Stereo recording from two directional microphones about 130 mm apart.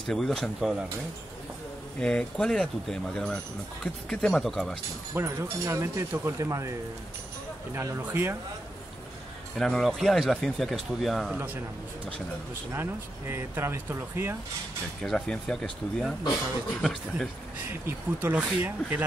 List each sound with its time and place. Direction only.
0.1 s speech: centre (ahead or behind)
2.0 s speech: 10° left (ahead or behind)
5.1 s speech: 20° right (ahead or behind)
7.7 s speech: 20° right (ahead or behind)
9.6 s speech: 5° left (ahead or behind)
11.3 s speech: 15° right (ahead or behind)
13.3 s speech: 20° right (ahead or behind)
15.0 s speech: 5° left (ahead or behind)
17.6 s speech: 15° right (ahead or behind)